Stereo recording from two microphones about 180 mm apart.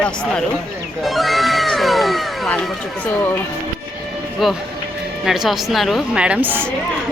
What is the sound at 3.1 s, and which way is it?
Speech, 10° left (ahead or behind).